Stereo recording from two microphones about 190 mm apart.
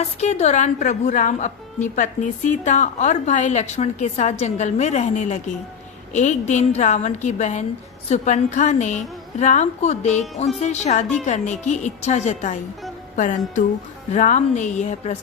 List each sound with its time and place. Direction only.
0.0 s a woman's voice: 35° left (ahead or behind)
13.1 s music: 40° left (ahead or behind)
14.1 s a woman's voice: 40° left (ahead or behind)